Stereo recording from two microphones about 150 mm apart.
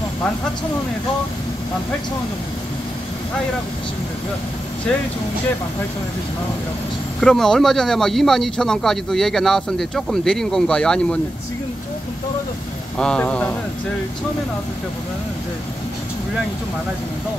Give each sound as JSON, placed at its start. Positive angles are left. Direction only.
{"t": 7.2, "sound": "speech", "side_deg": 5}
{"t": 12.9, "sound": "a man's voice", "side_deg": 5}